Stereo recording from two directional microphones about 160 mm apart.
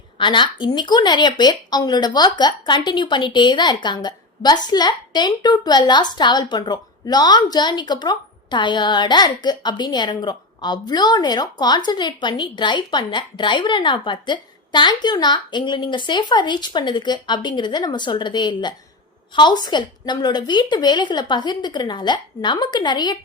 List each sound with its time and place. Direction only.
0.2 s a woman's voice: 30° left (ahead or behind)